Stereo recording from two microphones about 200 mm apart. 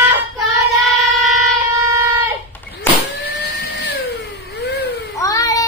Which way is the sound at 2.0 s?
10° right (ahead or behind).